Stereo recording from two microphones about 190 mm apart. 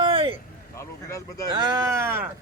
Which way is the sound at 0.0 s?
25° right (ahead or behind).